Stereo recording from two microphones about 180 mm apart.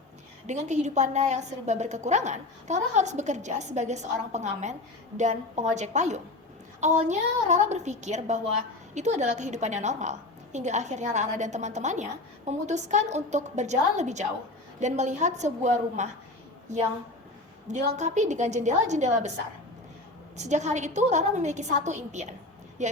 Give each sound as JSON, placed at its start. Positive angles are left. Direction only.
{"t": 0.4, "sound": "a woman's voice", "side_deg": -40}
{"t": 20.3, "sound": "a woman's voice", "side_deg": -40}